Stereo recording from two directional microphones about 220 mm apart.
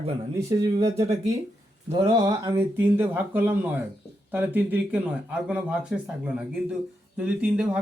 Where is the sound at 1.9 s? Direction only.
20° right (ahead or behind).